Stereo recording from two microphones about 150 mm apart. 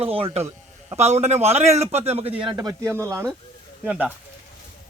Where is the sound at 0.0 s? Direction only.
40° right (ahead or behind).